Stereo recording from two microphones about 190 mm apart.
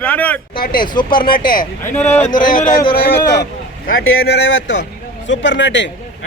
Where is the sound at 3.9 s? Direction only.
90° left.